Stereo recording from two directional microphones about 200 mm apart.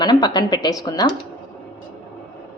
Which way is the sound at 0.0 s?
20° left (ahead or behind).